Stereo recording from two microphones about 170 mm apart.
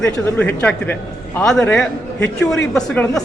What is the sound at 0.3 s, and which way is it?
A man's voice, 10° left (ahead or behind).